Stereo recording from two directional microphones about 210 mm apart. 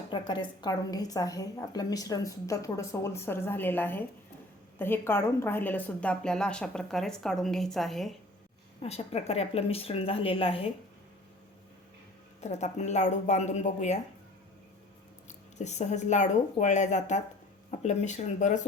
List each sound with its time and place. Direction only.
0.1 s a woman's voice: 20° left (ahead or behind); by 8.1 s centre (ahead or behind)
8.8 s speech: 30° left (ahead or behind)
12.4 s speech: 30° left (ahead or behind)
15.3 s speech: 35° left (ahead or behind)